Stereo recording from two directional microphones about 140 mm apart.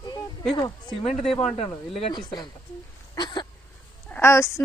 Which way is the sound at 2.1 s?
30° left (ahead or behind).